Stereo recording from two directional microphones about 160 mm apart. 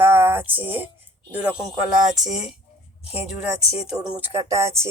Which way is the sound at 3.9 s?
5° right (ahead or behind).